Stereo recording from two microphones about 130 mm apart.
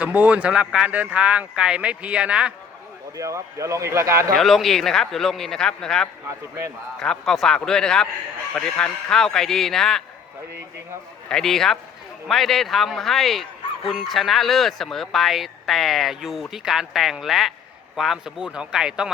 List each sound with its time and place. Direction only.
0.0 s speech: 10° right (ahead or behind)
3.2 s a man's voice: 25° right (ahead or behind)
4.4 s speech: centre (ahead or behind)
11.3 s speech: 5° left (ahead or behind)